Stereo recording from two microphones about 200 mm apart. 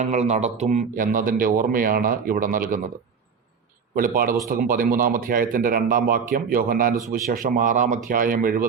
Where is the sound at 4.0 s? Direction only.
45° right (ahead or behind).